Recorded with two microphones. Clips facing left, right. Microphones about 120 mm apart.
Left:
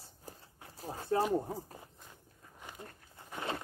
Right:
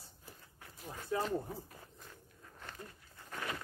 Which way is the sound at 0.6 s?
30° left (ahead or behind).